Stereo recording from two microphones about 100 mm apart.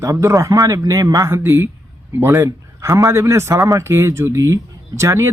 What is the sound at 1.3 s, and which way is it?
A man's voice, 25° right (ahead or behind).